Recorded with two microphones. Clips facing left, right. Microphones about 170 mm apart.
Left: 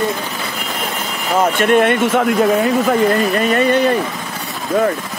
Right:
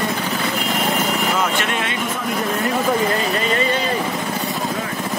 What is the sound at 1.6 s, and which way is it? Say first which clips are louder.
Speech: left 11 dB; 50° left (ahead or behind).